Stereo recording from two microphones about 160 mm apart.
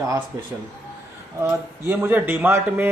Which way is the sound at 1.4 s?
15° right (ahead or behind).